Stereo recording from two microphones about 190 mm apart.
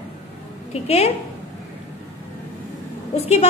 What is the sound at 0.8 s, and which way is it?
Speech, 35° left (ahead or behind).